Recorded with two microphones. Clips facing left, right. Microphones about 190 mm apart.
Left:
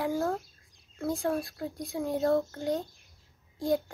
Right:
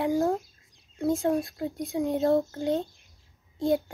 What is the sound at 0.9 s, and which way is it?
A child's voice, 20° right (ahead or behind).